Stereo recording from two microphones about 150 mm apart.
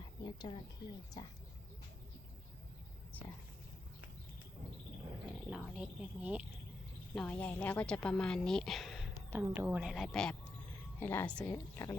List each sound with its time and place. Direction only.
0.0 s a sound: 30° left (ahead or behind)
1.2 s speech: 30° left (ahead or behind)
5.5 s a woman's voice: 5° right (ahead or behind)
7.1 s a woman's voice: 5° left (ahead or behind)
9.3 s a woman's voice: 15° right (ahead or behind); by 10.3 s 5° left (ahead or behind)
11.0 s speech: 15° left (ahead or behind)